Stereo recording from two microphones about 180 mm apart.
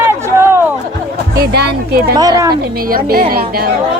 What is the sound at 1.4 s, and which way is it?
Speech, 60° right (ahead or behind).